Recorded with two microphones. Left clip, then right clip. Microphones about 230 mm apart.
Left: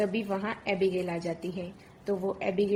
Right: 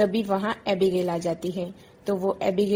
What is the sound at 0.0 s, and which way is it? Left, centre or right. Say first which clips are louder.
A woman's voice: right 7 dB; right.